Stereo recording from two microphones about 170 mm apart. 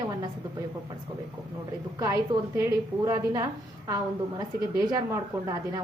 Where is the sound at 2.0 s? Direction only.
20° right (ahead or behind).